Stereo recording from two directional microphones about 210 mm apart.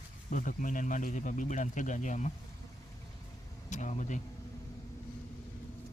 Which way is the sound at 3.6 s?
35° left (ahead or behind).